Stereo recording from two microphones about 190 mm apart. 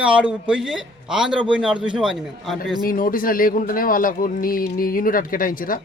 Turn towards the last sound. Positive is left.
turn(degrees=45)  # may be behind; listen again after turning